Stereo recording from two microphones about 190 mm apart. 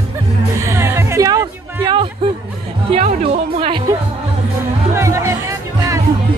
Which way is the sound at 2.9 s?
40° right (ahead or behind).